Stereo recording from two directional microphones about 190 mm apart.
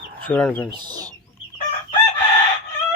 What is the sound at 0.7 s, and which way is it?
Speech, 25° right (ahead or behind).